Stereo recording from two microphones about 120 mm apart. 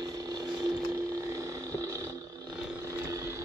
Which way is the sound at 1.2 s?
25° right (ahead or behind).